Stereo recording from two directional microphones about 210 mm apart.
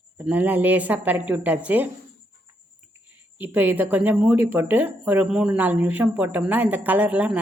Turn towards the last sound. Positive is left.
turn(degrees=-5)  # may be behind; listen again after turning